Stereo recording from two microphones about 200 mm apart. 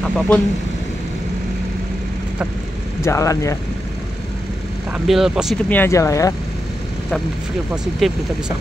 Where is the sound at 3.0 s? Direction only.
15° left (ahead or behind).